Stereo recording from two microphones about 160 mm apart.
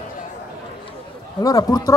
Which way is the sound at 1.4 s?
25° left (ahead or behind).